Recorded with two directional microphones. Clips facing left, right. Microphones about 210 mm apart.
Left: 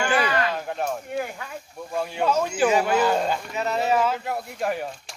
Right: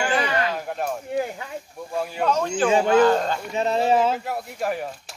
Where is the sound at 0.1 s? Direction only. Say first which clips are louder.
Even; 25° right (ahead or behind).